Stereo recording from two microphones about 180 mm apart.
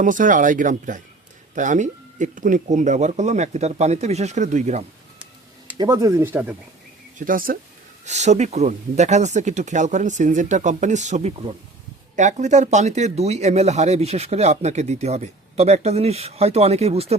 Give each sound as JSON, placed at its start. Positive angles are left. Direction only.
{"t": 0.0, "sound": "speech", "side_deg": -45}
{"t": 5.7, "sound": "speech", "side_deg": -20}
{"t": 7.2, "sound": "speech", "side_deg": -50}
{"t": 8.0, "sound": "speech", "side_deg": -40}